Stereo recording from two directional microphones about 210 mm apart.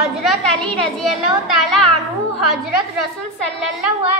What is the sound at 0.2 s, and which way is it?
A woman's voice, centre (ahead or behind).